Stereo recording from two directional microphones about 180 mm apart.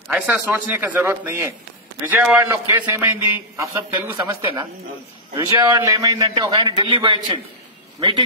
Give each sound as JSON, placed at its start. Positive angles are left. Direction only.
{"t": 0.1, "sound": "a man's voice", "side_deg": -10}